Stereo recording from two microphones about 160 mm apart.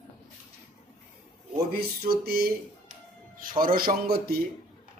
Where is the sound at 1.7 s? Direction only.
70° right (ahead or behind).